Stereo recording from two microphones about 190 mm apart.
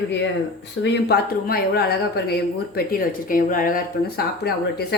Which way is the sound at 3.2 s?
45° left (ahead or behind).